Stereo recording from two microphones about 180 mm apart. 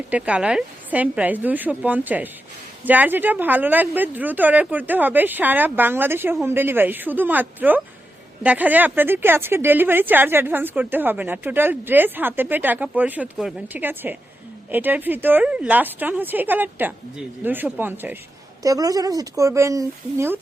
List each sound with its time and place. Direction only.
0.1 s speech: 5° right (ahead or behind)